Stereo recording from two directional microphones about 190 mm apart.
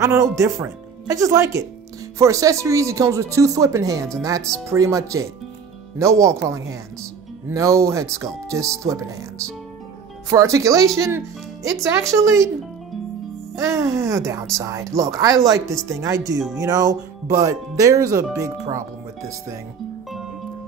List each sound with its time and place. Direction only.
0.0 s speech: 15° right (ahead or behind)
13.6 s speech: 15° right (ahead or behind)